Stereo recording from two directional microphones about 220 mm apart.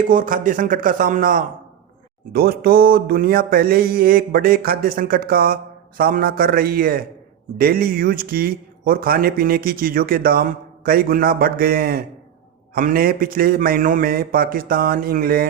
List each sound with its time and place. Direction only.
0.0 s a man's voice: 40° right (ahead or behind)